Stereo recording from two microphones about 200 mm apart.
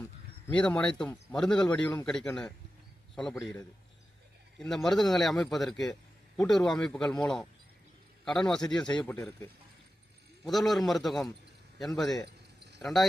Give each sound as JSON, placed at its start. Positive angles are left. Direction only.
{"t": 0.5, "sound": "a man's voice", "side_deg": 5}
{"t": 10.4, "sound": "speech", "side_deg": 0}